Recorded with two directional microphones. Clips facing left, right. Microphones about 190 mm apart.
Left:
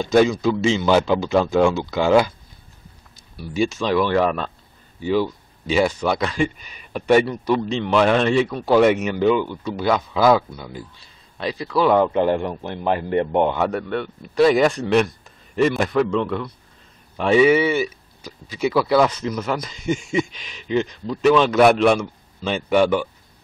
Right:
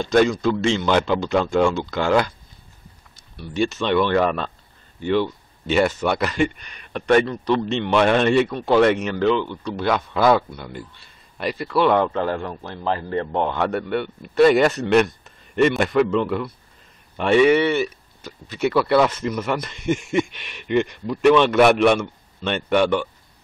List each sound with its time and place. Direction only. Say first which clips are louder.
0.0 s speech: left 1 dB; 5° left (ahead or behind)
11.9 s a man's voice: left 3 dB; 15° left (ahead or behind)
13.6 s speech: even; centre (ahead or behind)